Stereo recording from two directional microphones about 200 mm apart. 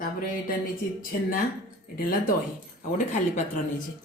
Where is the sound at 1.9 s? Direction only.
45° left (ahead or behind).